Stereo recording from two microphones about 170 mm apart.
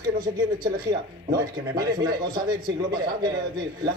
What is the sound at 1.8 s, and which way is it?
A man's voice, 25° right (ahead or behind).